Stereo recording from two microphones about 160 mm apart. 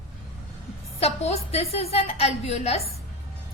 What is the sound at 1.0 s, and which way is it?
A woman's voice, 40° left (ahead or behind).